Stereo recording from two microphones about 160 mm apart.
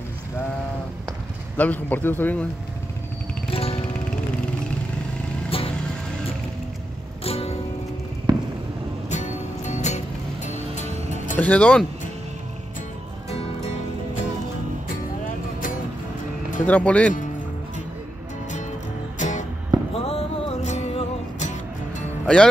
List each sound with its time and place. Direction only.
1.6 s a man's voice: 10° left (ahead or behind)
3.4 s music: 35° left (ahead or behind)
5.5 s music: 35° left (ahead or behind)
7.2 s music: 40° left (ahead or behind)
8.3 s a sound: 25° right (ahead or behind)
9.1 s music: 45° left (ahead or behind)
11.3 s a man's voice: 10° left (ahead or behind)
13.3 s music: 40° left (ahead or behind)
16.6 s a man's voice: 10° left (ahead or behind)
19.1 s music: 50° left (ahead or behind)
20.1 s music: 40° left (ahead or behind)
22.2 s speech: 5° left (ahead or behind)